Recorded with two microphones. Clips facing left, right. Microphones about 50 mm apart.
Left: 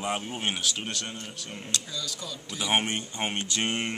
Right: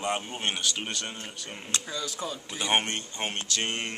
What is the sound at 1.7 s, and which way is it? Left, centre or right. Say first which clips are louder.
Speech: right 2 dB; right.